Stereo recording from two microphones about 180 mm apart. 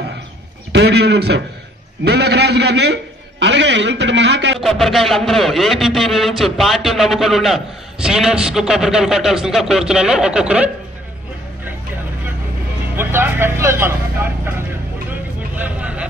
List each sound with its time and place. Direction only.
0.7 s a man's voice: 70° right (ahead or behind)
4.6 s a man's voice: centre (ahead or behind)
12.9 s speech: 10° right (ahead or behind)
15.0 s vehicle: 10° right (ahead or behind)